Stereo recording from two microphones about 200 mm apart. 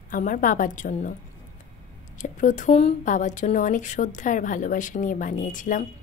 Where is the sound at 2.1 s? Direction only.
40° left (ahead or behind).